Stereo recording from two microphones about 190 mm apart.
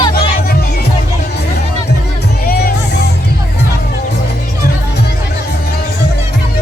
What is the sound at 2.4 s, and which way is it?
Music, 50° left (ahead or behind).